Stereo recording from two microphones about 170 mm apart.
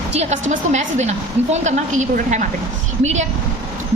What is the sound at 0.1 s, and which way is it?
A woman's voice, 40° right (ahead or behind).